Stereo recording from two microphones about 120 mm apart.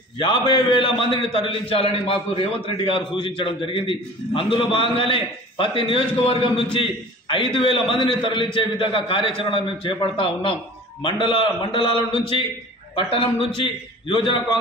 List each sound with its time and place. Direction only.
0.2 s a man's voice: 40° left (ahead or behind)